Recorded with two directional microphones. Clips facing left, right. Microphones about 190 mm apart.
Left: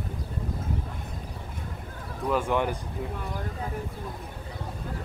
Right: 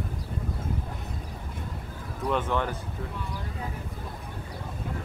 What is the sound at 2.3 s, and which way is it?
Speech, 10° left (ahead or behind).